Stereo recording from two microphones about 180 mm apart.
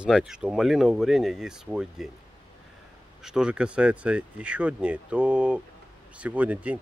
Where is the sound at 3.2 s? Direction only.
5° right (ahead or behind).